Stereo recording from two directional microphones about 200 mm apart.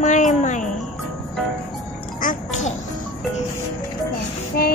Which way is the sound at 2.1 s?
40° left (ahead or behind).